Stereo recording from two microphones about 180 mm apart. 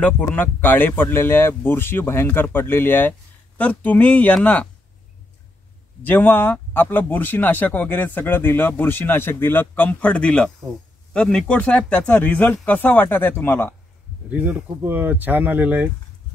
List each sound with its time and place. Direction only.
0.0 s speech: 10° left (ahead or behind)
6.0 s speech: 10° left (ahead or behind)
14.3 s speech: 10° right (ahead or behind)